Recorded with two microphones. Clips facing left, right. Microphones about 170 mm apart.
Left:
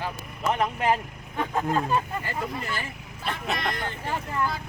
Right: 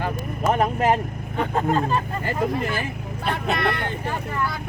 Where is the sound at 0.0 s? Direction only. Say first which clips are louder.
Right 5 dB; 45° right (ahead or behind).